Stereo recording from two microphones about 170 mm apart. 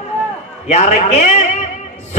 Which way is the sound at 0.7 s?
45° left (ahead or behind).